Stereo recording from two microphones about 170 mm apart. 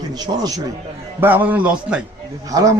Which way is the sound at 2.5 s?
20° right (ahead or behind).